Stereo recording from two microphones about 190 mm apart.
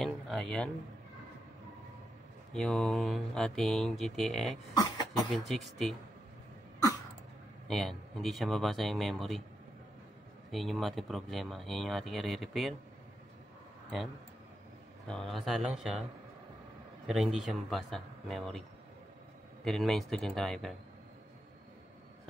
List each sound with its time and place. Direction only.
0.0 s speech: 5° left (ahead or behind)
2.5 s speech: 5° left (ahead or behind)
4.7 s a sound: 20° left (ahead or behind)
5.5 s speech: centre (ahead or behind)
7.6 s speech: centre (ahead or behind)
10.5 s speech: centre (ahead or behind)
15.0 s speech: centre (ahead or behind)
17.1 s speech: centre (ahead or behind)
19.6 s speech: centre (ahead or behind)